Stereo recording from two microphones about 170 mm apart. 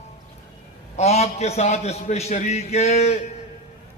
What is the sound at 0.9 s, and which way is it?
A man's voice, 40° left (ahead or behind).